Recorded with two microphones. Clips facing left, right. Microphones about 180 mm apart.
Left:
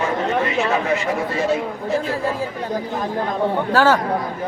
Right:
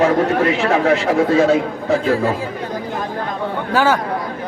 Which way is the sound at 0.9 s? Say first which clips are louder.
Right 7 dB; 90° right.